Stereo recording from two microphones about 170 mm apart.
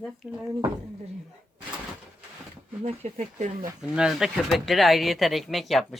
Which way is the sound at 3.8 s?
5° right (ahead or behind).